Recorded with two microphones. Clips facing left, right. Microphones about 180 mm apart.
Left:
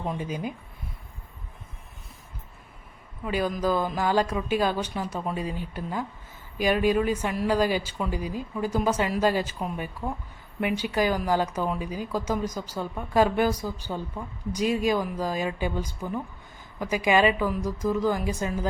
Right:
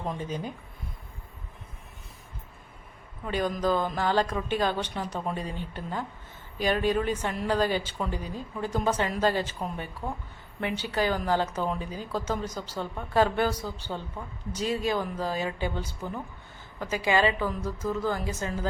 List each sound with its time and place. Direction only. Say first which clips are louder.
0.0 s speech: left 2 dB; 5° left (ahead or behind)
3.2 s speech: left 1 dB; 10° left (ahead or behind)